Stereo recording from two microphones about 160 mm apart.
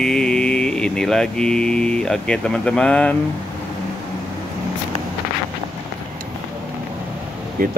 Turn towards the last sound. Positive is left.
turn(degrees=-60)  # may be behind; listen again after turning